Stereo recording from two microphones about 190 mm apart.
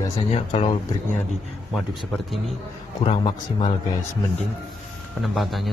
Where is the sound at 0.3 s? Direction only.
35° left (ahead or behind).